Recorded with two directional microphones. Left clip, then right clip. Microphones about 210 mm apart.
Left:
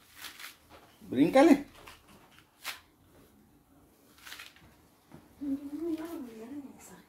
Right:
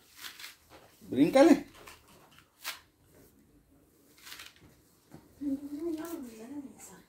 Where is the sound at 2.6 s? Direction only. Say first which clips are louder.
Even; 10° right (ahead or behind).